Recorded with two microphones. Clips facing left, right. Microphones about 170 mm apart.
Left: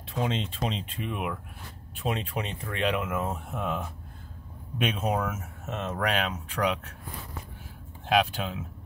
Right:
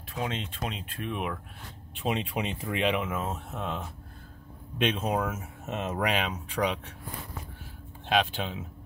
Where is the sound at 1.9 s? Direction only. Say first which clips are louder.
Right 1 dB; centre (ahead or behind).